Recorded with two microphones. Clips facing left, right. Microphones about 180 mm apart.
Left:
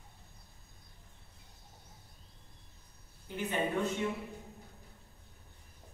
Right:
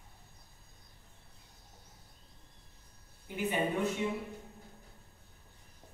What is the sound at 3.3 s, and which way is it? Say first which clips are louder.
Speech: right 1 dB; 10° right (ahead or behind).